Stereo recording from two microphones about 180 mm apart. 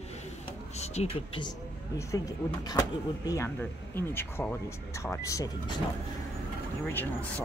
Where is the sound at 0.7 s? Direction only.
35° left (ahead or behind).